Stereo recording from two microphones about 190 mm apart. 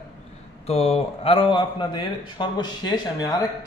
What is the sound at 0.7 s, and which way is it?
A man's voice, 35° left (ahead or behind).